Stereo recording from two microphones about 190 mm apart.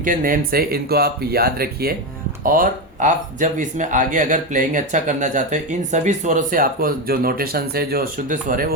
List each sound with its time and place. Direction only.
0.0 s speech: 45° right (ahead or behind)